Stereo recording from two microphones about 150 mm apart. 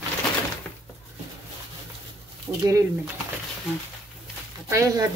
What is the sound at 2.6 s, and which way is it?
Speech, 20° right (ahead or behind).